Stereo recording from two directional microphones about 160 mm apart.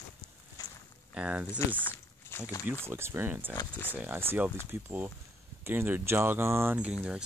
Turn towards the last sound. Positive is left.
turn(degrees=-5)  # may be behind; listen again after turning